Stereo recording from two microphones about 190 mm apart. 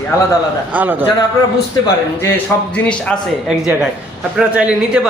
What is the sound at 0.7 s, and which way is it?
Speech, 10° right (ahead or behind).